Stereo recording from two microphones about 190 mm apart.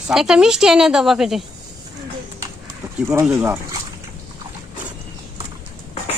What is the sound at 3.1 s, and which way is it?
Speech, 10° right (ahead or behind).